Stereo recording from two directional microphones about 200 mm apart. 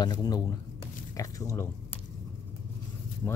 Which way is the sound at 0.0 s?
20° left (ahead or behind).